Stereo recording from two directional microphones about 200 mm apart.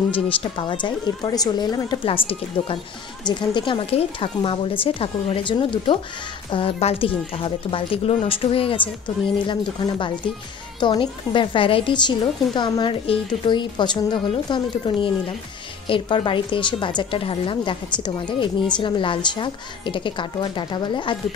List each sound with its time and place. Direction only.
0.1 s a woman's voice: 25° left (ahead or behind)